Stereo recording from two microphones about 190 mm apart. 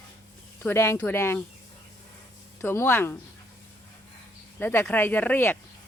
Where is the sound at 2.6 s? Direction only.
15° left (ahead or behind).